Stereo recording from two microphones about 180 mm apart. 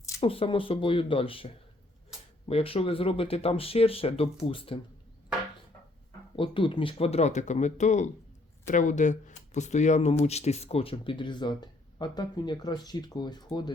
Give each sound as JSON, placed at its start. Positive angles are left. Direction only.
{"t": 0.2, "sound": "speech", "side_deg": 30}
{"t": 2.5, "sound": "speech", "side_deg": 30}
{"t": 6.3, "sound": "speech", "side_deg": 30}